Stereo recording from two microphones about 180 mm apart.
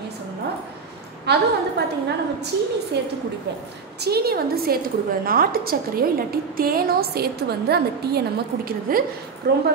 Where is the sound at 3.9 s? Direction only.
60° right (ahead or behind).